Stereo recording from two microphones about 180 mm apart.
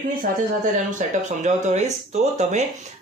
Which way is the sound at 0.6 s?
45° right (ahead or behind).